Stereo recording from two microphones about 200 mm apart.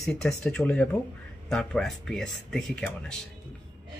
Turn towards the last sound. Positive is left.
turn(degrees=5)  # may be behind; listen again after turning